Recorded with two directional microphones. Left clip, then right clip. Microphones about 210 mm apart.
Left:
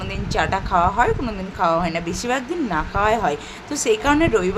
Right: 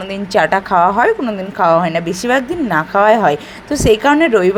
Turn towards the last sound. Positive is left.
turn(degrees=-20)  # may be behind; listen again after turning